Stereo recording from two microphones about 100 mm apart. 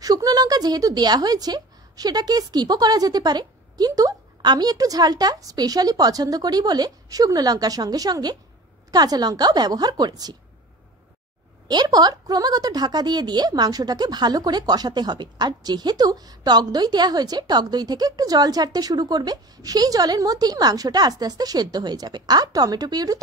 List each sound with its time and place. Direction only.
0.0 s a woman's voice: 40° right (ahead or behind)
11.6 s a woman's voice: 45° right (ahead or behind)